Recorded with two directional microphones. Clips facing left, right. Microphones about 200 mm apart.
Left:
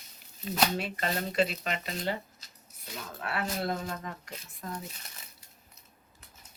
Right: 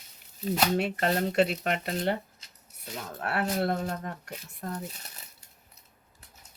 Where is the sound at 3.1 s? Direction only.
55° right (ahead or behind).